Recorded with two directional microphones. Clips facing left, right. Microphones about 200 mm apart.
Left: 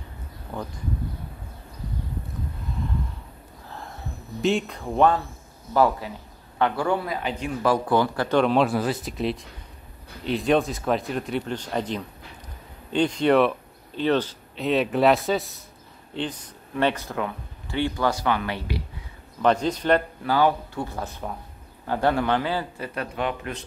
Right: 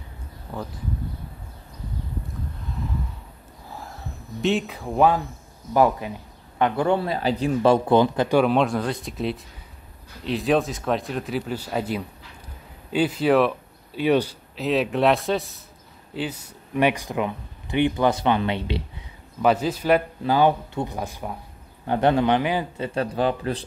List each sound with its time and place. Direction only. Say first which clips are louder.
3.7 s a sound: even; centre (ahead or behind)
5.7 s speech: right 2 dB; 15° right (ahead or behind)
8.4 s speech: even; centre (ahead or behind)
14.6 s speech: even; centre (ahead or behind); by 18.8 s 25° right (ahead or behind)
19.4 s speech: right 1 dB; 5° right (ahead or behind)
20.2 s speech: right 2 dB; 20° right (ahead or behind)
22.8 s speech: right 8 dB; 30° right (ahead or behind)